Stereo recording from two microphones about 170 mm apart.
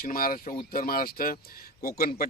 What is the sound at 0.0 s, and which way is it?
A man's voice, 60° left (ahead or behind).